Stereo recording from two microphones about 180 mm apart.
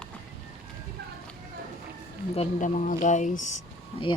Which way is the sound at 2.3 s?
45° left (ahead or behind).